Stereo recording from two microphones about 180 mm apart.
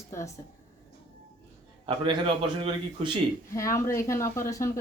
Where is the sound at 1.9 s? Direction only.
30° right (ahead or behind).